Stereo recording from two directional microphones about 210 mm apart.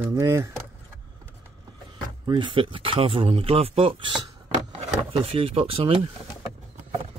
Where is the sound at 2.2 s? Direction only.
20° right (ahead or behind).